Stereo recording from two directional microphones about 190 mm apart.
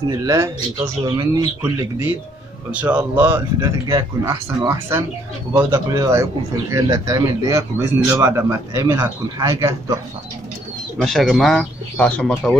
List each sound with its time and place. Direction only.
0.1 s a man's voice: 20° right (ahead or behind)
11.0 s speech: centre (ahead or behind)